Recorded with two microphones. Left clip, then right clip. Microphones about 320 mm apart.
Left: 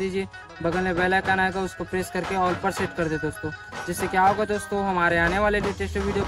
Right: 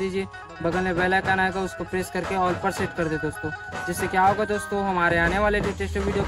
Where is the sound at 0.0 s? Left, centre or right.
Centre.